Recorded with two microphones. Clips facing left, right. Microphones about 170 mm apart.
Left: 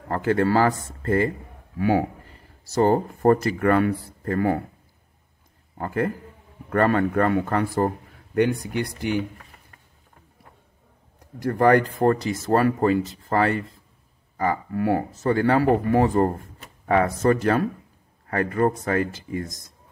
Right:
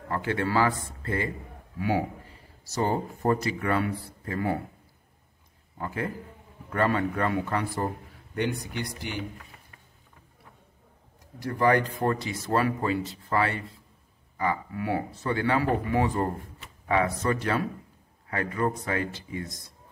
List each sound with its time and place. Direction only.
0.1 s speech: 45° left (ahead or behind)
5.8 s speech: 50° left (ahead or behind)
11.4 s speech: 50° left (ahead or behind)